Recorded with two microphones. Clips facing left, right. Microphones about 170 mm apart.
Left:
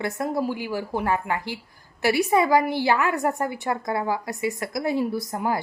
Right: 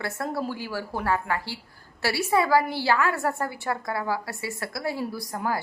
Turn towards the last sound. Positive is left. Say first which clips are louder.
# left 3 dB
turn(degrees=20)  # may be behind; listen again after turning